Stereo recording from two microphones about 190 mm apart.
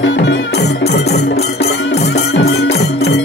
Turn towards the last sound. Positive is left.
turn(degrees=60)  # may be behind; listen again after turning